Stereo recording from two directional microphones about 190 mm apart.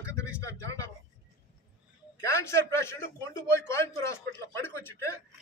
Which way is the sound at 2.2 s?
15° left (ahead or behind).